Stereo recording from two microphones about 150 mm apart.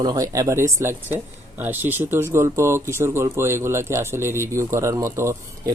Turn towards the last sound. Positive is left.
turn(degrees=-20)  # may be behind; listen again after turning